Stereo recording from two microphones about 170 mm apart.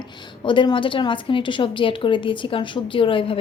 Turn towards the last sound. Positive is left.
turn(degrees=30)  # may be behind; listen again after turning